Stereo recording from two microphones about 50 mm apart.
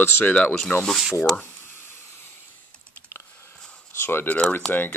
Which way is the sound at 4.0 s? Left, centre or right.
Left.